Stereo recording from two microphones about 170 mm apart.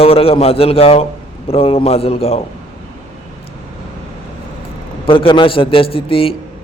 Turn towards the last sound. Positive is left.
turn(degrees=35)  # may be behind; listen again after turning